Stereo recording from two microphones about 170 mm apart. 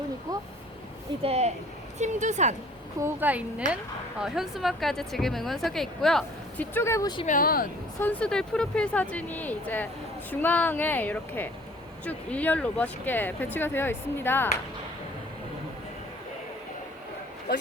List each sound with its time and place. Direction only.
1.2 s a woman's voice: 40° right (ahead or behind)
3.0 s a woman's voice: 10° right (ahead or behind)
3.6 s a woman's voice: 45° right (ahead or behind)
4.2 s a woman's voice: centre (ahead or behind)
6.7 s speech: 15° left (ahead or behind)
7.3 s speech: 55° left (ahead or behind)
8.0 s speech: 5° left (ahead or behind)